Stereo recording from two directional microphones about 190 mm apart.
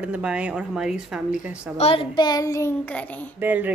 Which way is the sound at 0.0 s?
5° right (ahead or behind).